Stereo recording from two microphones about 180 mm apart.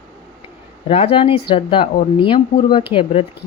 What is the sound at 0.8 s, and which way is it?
Speech, 35° left (ahead or behind).